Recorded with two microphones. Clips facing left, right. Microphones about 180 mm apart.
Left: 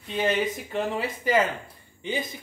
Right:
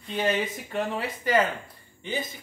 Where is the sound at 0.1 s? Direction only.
Centre (ahead or behind).